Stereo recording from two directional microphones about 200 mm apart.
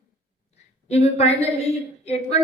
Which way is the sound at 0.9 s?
30° left (ahead or behind).